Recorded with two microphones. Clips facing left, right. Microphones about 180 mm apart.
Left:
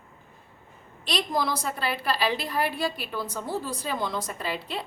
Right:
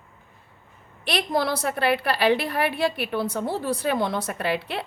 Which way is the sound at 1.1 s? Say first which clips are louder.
Right 3 dB; 60° right (ahead or behind).